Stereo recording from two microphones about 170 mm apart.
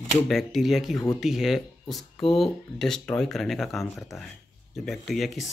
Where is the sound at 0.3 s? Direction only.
Centre (ahead or behind).